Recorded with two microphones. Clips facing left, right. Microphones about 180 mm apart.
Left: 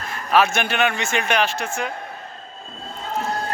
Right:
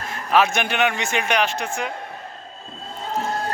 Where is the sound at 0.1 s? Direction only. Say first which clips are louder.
Even; 20° right (ahead or behind).